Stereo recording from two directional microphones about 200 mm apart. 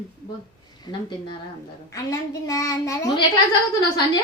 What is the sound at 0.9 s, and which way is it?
A woman's voice, 20° left (ahead or behind).